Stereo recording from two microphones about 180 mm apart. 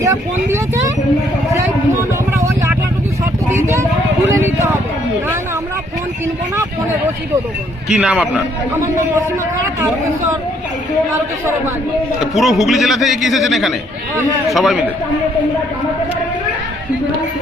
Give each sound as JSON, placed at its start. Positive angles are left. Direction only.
{"t": 0.0, "sound": "speech", "side_deg": -15}
{"t": 7.9, "sound": "a man's voice", "side_deg": -5}
{"t": 12.2, "sound": "a man's voice", "side_deg": 0}